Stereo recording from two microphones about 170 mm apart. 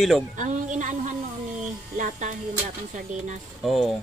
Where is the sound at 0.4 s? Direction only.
45° right (ahead or behind).